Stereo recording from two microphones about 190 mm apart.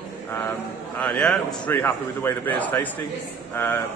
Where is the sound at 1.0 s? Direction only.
5° left (ahead or behind).